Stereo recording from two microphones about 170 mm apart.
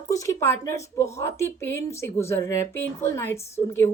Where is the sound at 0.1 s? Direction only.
15° left (ahead or behind).